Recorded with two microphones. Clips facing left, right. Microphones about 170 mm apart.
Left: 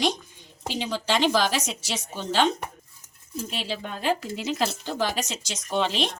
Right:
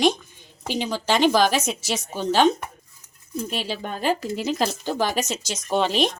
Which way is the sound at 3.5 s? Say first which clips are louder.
Right 2 dB; 45° right (ahead or behind).